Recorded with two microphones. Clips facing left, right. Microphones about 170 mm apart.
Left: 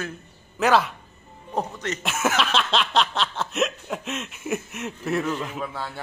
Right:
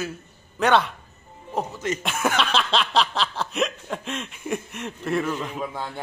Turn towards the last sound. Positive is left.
turn(degrees=-15)  # may be behind; listen again after turning